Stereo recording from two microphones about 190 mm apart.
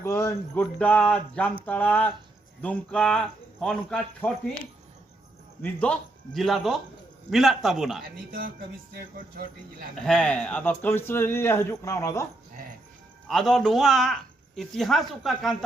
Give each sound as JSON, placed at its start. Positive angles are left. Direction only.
{"t": 0.0, "sound": "speech", "side_deg": 15}
{"t": 5.6, "sound": "speech", "side_deg": 5}
{"t": 8.3, "sound": "music", "side_deg": -50}
{"t": 9.9, "sound": "speech", "side_deg": 5}
{"t": 13.2, "sound": "speech", "side_deg": 0}